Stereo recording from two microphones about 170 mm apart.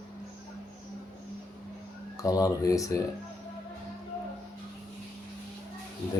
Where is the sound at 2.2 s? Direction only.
20° left (ahead or behind).